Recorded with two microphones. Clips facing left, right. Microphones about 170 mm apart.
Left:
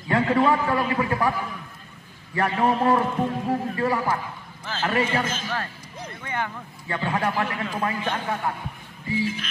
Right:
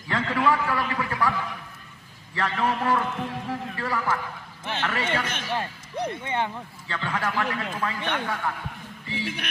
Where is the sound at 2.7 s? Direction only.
35° left (ahead or behind).